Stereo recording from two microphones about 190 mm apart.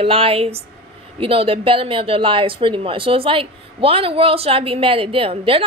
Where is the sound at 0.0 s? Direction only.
30° right (ahead or behind).